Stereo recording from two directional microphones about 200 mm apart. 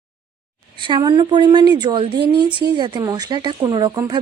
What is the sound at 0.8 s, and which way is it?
A woman's voice, 25° right (ahead or behind).